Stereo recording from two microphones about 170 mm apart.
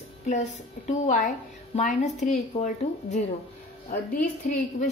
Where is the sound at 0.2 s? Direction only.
40° left (ahead or behind).